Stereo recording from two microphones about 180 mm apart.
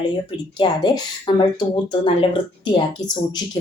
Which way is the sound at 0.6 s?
25° left (ahead or behind).